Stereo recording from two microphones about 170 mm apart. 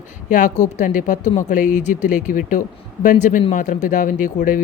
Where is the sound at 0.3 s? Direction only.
50° left (ahead or behind).